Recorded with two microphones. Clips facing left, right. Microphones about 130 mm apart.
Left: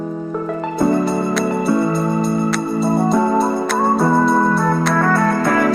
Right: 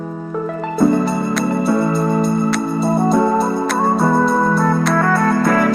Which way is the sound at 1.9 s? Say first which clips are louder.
Right 1 dB; centre (ahead or behind).